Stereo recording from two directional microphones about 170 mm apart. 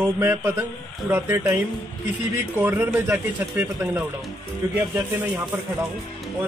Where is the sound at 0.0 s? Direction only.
15° right (ahead or behind).